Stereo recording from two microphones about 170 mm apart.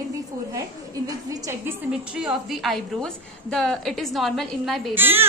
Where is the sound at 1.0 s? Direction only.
20° right (ahead or behind); by 4.9 s centre (ahead or behind).